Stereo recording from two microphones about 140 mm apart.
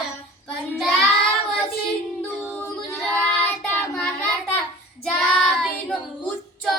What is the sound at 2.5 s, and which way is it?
Singing, 10° left (ahead or behind).